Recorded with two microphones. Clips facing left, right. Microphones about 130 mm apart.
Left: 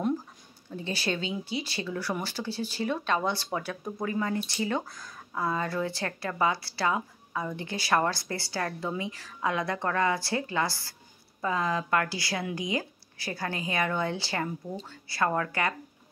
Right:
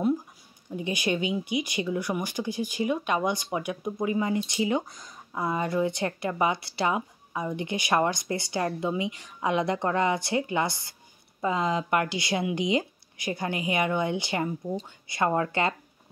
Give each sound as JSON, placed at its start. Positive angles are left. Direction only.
{"t": 0.7, "sound": "speech", "side_deg": -15}